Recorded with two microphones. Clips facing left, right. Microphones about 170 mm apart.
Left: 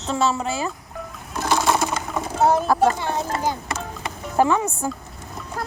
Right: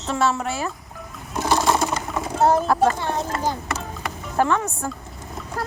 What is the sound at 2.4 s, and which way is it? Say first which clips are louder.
A child's voice: even; 5° left (ahead or behind).